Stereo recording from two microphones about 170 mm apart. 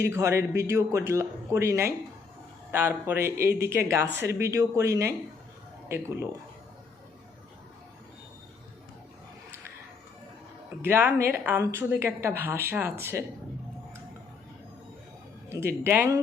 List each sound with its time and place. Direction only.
0.0 s speech: 15° right (ahead or behind)
10.8 s speech: 10° right (ahead or behind)
15.6 s speech: 15° right (ahead or behind)